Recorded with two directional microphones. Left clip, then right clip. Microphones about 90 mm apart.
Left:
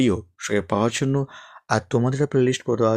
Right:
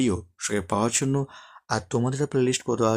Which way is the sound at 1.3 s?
25° left (ahead or behind).